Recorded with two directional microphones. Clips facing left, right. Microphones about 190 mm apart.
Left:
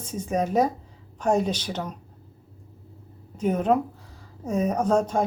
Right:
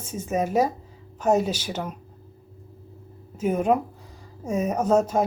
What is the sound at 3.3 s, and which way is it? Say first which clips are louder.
Speech: even; 10° right (ahead or behind).